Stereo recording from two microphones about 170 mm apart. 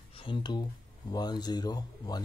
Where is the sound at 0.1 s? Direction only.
30° left (ahead or behind).